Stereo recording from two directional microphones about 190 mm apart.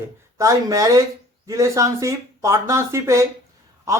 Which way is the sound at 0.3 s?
15° right (ahead or behind).